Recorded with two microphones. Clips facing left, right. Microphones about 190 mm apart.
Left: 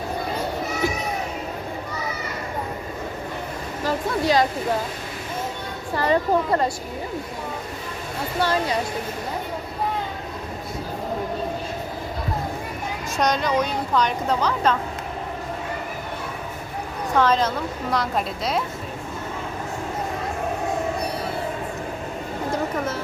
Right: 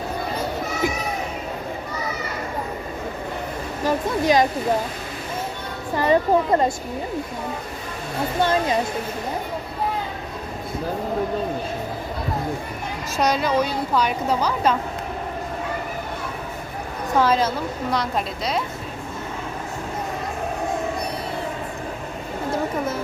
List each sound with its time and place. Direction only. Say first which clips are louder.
3.8 s a sound: right 2 dB; 20° right (ahead or behind)
6.0 s speech: right 2 dB; 20° right (ahead or behind)
8.4 s speech: right 2 dB; 20° right (ahead or behind)
13.1 s a woman's voice: right 1 dB; 5° right (ahead or behind)
17.2 s a woman's voice: right 1 dB; 10° right (ahead or behind)